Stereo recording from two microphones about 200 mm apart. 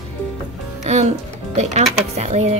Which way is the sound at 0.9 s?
35° right (ahead or behind).